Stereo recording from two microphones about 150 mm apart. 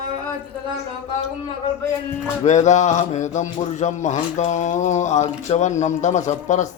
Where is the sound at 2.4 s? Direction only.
50° left (ahead or behind).